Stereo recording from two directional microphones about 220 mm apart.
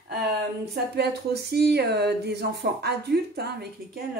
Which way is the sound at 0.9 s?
50° right (ahead or behind).